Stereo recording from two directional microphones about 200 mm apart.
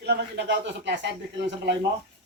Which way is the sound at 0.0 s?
60° right (ahead or behind).